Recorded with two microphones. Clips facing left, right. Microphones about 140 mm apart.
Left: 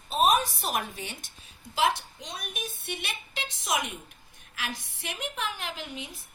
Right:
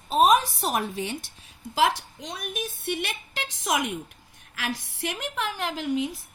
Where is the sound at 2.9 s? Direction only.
50° right (ahead or behind).